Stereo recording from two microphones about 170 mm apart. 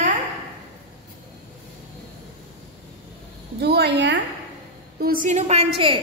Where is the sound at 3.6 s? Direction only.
75° right (ahead or behind).